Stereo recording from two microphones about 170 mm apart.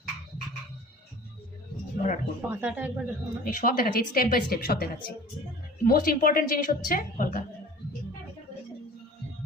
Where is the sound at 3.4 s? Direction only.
55° left (ahead or behind).